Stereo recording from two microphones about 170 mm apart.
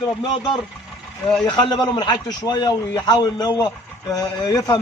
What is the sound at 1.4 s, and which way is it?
A man's voice, 25° left (ahead or behind).